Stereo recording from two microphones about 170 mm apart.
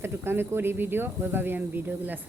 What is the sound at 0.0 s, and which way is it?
A woman's voice, 15° right (ahead or behind).